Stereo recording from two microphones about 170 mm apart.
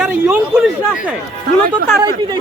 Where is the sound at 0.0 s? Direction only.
10° right (ahead or behind).